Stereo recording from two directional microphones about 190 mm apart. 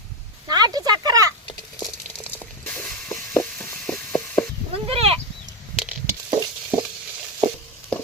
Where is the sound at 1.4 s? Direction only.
20° left (ahead or behind).